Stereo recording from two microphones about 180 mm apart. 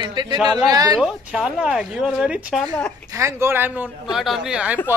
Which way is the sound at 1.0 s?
5° right (ahead or behind).